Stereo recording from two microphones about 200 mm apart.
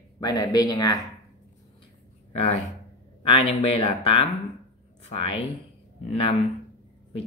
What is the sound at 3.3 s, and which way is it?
Speech, 30° left (ahead or behind).